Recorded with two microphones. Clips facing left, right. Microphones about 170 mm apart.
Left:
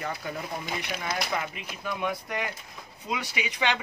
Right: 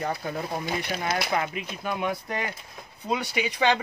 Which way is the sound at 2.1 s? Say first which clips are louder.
Right 2 dB; 30° right (ahead or behind).